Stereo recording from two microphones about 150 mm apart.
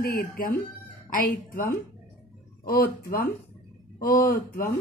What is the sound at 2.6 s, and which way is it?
A woman's voice, 75° left (ahead or behind).